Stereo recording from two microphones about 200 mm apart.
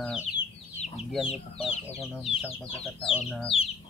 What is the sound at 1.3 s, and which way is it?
Speech, 30° left (ahead or behind).